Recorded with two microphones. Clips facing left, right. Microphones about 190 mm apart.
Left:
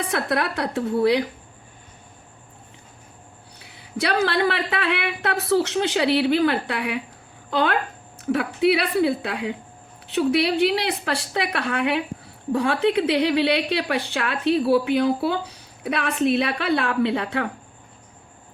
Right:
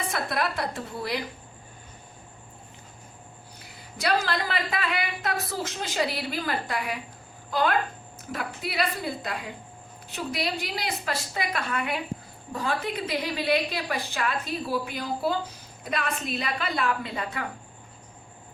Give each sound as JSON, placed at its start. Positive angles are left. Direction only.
{"t": 0.1, "sound": "a woman's voice", "side_deg": 70}
{"t": 3.9, "sound": "a woman's voice", "side_deg": 65}